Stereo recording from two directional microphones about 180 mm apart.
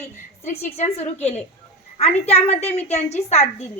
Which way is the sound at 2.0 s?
35° left (ahead or behind).